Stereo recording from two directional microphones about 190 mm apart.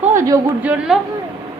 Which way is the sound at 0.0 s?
40° right (ahead or behind).